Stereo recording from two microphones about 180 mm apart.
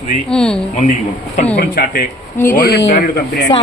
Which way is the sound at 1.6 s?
55° left (ahead or behind).